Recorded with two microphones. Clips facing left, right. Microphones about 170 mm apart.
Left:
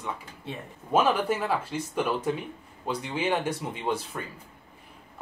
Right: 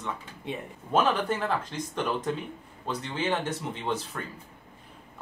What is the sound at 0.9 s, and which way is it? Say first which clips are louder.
Speech: left 2 dB; 10° left (ahead or behind).